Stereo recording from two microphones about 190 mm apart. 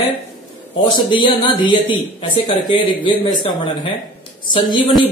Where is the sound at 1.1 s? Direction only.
25° left (ahead or behind).